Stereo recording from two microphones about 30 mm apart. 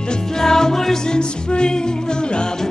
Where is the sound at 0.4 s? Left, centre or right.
Centre.